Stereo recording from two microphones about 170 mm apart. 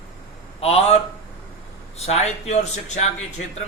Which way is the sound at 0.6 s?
35° left (ahead or behind).